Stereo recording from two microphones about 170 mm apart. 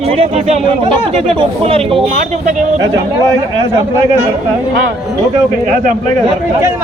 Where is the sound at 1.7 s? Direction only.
35° right (ahead or behind).